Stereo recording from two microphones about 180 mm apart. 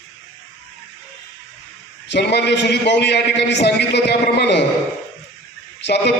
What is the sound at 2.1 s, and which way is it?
A man's voice, 70° left (ahead or behind).